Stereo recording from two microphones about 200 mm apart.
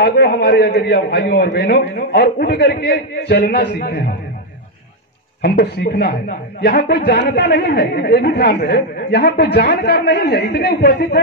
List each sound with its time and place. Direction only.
0.0 s a woman's voice: 55° left (ahead or behind)
5.4 s a woman's voice: 50° left (ahead or behind)